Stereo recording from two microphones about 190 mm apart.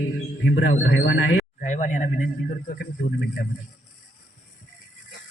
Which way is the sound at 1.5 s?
40° left (ahead or behind).